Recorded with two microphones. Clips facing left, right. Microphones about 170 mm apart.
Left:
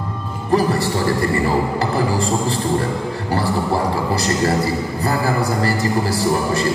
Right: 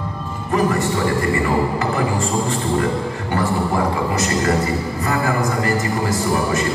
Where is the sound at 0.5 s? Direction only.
35° left (ahead or behind).